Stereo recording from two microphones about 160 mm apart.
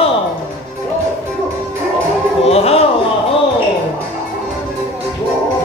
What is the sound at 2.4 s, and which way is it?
Speech, 40° left (ahead or behind).